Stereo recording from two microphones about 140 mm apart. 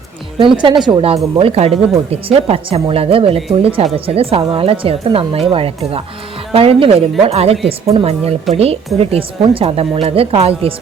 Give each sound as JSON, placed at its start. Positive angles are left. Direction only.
{"t": 0.3, "sound": "speech", "side_deg": -35}
{"t": 1.1, "sound": "speech", "side_deg": -45}
{"t": 8.5, "sound": "speech", "side_deg": -45}